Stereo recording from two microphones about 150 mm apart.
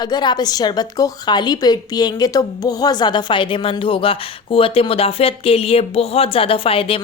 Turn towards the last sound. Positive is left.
turn(degrees=40)  # may be behind; listen again after turning